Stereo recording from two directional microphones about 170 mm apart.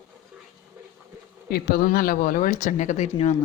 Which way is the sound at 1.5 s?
65° left (ahead or behind).